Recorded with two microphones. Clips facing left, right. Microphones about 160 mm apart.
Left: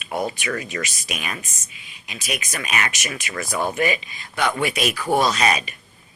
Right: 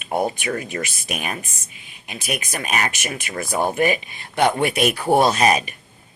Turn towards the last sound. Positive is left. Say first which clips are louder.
# right 3 dB
turn(degrees=-50)  # may be behind; listen again after turning